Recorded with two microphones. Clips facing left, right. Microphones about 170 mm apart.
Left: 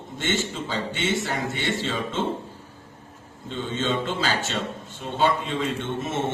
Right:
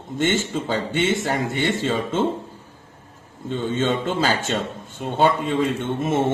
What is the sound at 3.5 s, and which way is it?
A man's voice, 50° right (ahead or behind).